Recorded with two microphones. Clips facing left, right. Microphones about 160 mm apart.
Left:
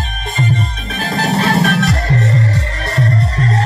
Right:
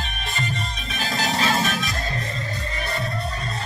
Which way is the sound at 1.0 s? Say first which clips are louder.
Left 8 dB; 60° left (ahead or behind).